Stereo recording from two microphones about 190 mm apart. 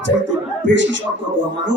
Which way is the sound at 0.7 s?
75° right (ahead or behind).